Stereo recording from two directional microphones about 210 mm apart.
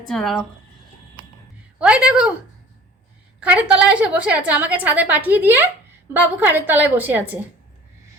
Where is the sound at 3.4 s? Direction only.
5° right (ahead or behind).